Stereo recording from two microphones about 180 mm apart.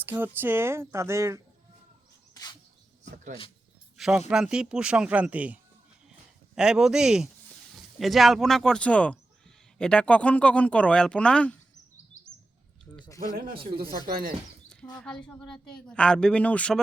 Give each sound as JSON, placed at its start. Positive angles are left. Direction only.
{"t": 0.0, "sound": "speech", "side_deg": -10}
{"t": 2.3, "sound": "a sound", "side_deg": 20}
{"t": 3.9, "sound": "a sound", "side_deg": 0}
{"t": 4.3, "sound": "a woman's voice", "side_deg": -5}
{"t": 6.6, "sound": "a woman's voice", "side_deg": -5}
{"t": 13.3, "sound": "speech", "side_deg": -55}
{"t": 14.9, "sound": "a woman's voice", "side_deg": 5}